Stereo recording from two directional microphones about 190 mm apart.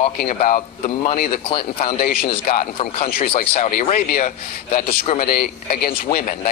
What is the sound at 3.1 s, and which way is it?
Speech, 50° left (ahead or behind).